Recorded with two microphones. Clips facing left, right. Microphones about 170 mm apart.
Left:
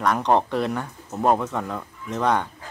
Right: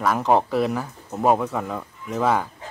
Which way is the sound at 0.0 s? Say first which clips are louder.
Right 1 dB; 5° right (ahead or behind).